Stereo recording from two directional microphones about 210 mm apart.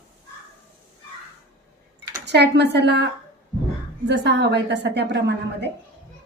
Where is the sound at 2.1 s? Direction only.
50° right (ahead or behind).